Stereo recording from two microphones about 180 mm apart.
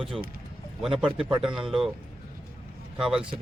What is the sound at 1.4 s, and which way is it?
Speech, 5° right (ahead or behind).